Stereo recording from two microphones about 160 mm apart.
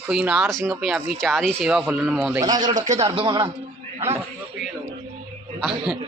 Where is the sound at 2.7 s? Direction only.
45° right (ahead or behind); by 3.5 s 30° right (ahead or behind).